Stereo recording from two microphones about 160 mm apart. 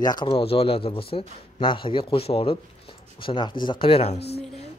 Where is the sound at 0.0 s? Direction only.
25° left (ahead or behind).